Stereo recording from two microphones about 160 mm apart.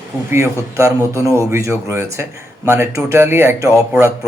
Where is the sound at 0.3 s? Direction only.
15° right (ahead or behind).